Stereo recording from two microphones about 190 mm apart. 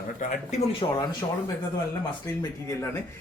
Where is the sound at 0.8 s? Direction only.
25° left (ahead or behind).